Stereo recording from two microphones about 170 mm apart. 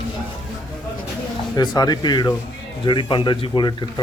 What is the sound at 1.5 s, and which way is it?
Speech, 25° left (ahead or behind).